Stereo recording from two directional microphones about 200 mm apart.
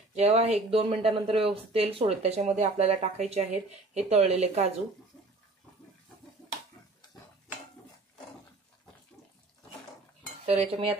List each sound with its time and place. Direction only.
0.1 s speech: 35° right (ahead or behind)
10.4 s cutlery: 30° right (ahead or behind)